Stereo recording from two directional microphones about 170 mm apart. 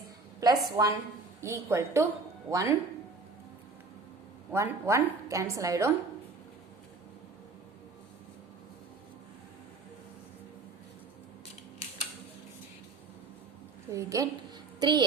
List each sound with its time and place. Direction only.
0.3 s a woman's voice: 20° right (ahead or behind)
4.5 s a woman's voice: 15° right (ahead or behind)
13.9 s a woman's voice: 20° right (ahead or behind)